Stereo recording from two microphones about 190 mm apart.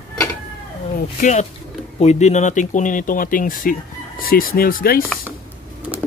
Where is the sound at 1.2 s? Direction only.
40° left (ahead or behind).